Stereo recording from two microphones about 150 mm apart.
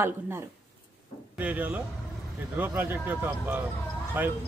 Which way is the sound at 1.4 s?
10° right (ahead or behind).